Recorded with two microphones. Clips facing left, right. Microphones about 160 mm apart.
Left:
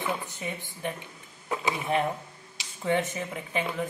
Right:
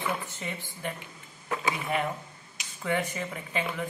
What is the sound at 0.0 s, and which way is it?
Speech, 20° left (ahead or behind).